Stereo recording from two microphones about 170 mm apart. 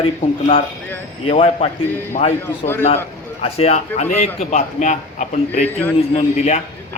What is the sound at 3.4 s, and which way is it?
A man's voice, 40° left (ahead or behind).